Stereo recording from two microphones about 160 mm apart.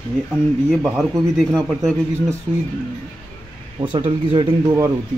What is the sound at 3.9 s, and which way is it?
Speech, 30° right (ahead or behind).